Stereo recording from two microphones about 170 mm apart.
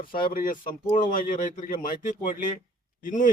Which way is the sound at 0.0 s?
30° left (ahead or behind).